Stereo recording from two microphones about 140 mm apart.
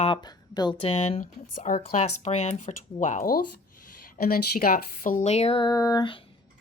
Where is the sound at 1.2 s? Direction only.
70° left (ahead or behind).